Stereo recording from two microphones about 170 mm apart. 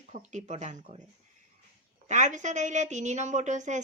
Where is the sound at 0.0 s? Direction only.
45° right (ahead or behind).